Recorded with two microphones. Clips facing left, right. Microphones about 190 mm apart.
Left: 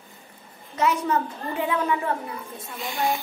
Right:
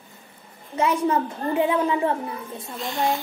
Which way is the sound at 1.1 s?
25° right (ahead or behind).